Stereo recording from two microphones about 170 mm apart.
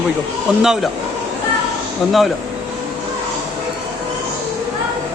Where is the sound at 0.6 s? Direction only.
5° right (ahead or behind).